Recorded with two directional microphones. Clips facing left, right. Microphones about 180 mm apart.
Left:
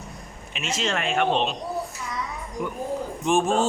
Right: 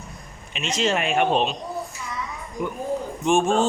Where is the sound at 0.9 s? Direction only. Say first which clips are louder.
Right 1 dB; 15° right (ahead or behind).